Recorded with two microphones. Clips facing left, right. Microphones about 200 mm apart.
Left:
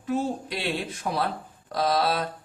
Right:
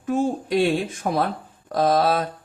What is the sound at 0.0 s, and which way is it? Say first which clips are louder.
Speech: right 5 dB; 50° right (ahead or behind).